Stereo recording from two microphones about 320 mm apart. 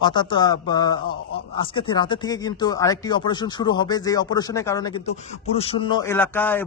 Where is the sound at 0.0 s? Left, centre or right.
Centre.